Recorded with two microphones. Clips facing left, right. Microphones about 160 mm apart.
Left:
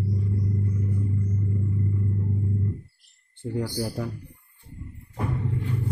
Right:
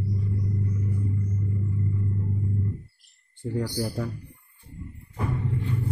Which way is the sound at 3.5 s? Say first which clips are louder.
Even; 5° left (ahead or behind).